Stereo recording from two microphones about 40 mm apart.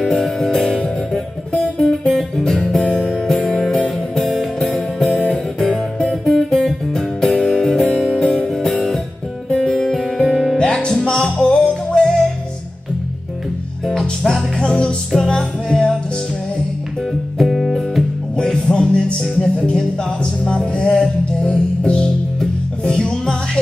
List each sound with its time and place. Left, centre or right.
0.0 s music: centre
1.9 s guitar: centre
2.9 s music: left
3.3 s music: centre
6.2 s music: centre
8.5 s music: centre
10.2 s music: centre
10.6 s music: left
13.8 s music: centre
17.4 s music: centre
18.3 s music: left
21.5 s music: left